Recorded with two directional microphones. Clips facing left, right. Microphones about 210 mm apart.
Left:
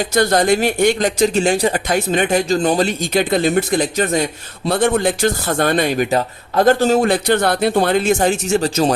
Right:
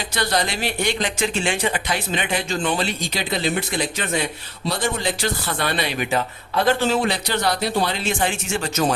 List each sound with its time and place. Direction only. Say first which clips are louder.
0.0 s speech: left 8 dB; 45° left (ahead or behind)